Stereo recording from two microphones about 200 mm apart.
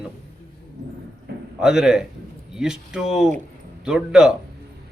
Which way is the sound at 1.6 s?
5° right (ahead or behind).